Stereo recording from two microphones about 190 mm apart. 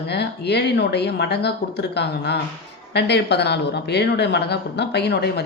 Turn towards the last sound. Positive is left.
turn(degrees=60)  # may be behind; listen again after turning